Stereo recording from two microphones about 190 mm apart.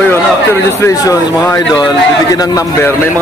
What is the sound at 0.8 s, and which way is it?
A man's voice, 20° left (ahead or behind).